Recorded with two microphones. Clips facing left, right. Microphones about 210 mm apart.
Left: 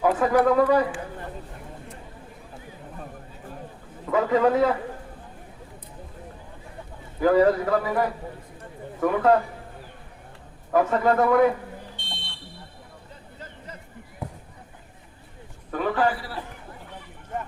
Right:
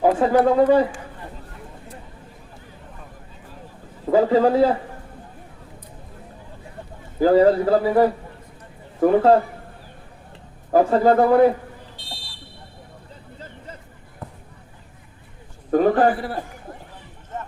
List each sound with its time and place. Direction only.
0.0 s speech: 30° right (ahead or behind)
4.1 s speech: 30° right (ahead or behind)
7.2 s a man's voice: 30° right (ahead or behind)
10.7 s speech: 30° right (ahead or behind)
11.9 s buzzer: 35° right (ahead or behind)
14.2 s basketball bounce: 10° left (ahead or behind)
15.7 s a man's voice: 45° right (ahead or behind)